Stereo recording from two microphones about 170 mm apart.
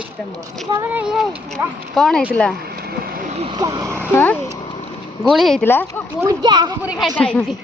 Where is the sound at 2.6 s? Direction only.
65° right (ahead or behind).